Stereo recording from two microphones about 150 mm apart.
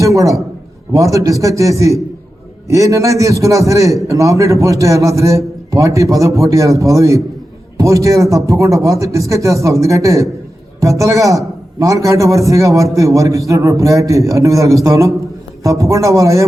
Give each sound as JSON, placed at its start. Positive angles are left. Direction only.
{"t": 0.0, "sound": "a man's voice", "side_deg": -20}